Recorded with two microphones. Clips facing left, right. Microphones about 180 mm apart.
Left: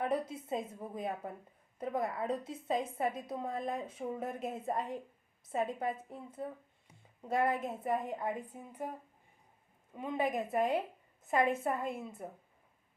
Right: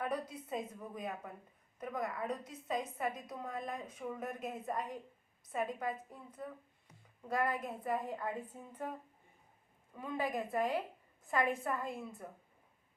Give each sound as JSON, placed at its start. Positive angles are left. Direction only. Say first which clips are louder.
{"t": 0.0, "sound": "a woman's voice", "louder": "left 4 dB", "side_deg": 25}
{"t": 9.9, "sound": "a woman's voice", "louder": "left 4 dB", "side_deg": 20}